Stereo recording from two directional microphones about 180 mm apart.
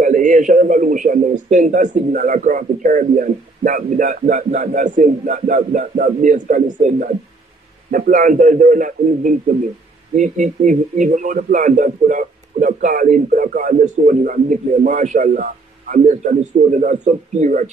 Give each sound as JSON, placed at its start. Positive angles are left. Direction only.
{"t": 0.0, "sound": "a man's voice", "side_deg": -45}